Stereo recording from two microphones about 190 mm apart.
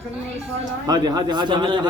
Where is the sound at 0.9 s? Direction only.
20° right (ahead or behind).